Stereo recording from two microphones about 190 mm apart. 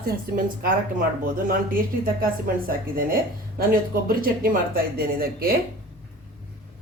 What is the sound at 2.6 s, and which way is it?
Speech, 50° right (ahead or behind).